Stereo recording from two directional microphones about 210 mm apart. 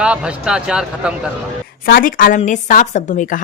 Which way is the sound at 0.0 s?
5° right (ahead or behind).